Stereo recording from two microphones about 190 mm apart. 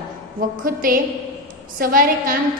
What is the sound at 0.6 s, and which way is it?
A woman's voice, 50° right (ahead or behind).